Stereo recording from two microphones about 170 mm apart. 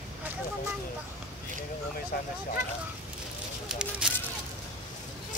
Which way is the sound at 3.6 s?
5° right (ahead or behind).